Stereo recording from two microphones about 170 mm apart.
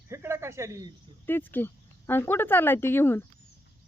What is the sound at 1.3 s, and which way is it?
Speech, 10° left (ahead or behind).